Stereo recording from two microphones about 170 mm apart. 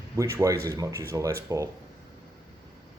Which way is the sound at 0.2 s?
20° right (ahead or behind).